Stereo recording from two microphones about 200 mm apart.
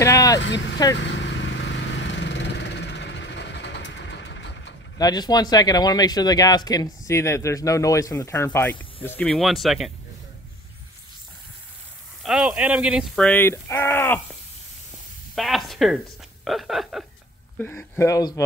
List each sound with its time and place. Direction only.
0.0 s vehicle: 15° left (ahead or behind)
0.4 s speech: 65° left (ahead or behind)
0.9 s vehicle: 65° left (ahead or behind)
4.9 s speech: 20° left (ahead or behind); by 9.9 s centre (ahead or behind)
12.2 s speech: centre (ahead or behind)
15.3 s a sound: centre (ahead or behind)
16.4 s speech: centre (ahead or behind)
17.6 s speech: 10° left (ahead or behind)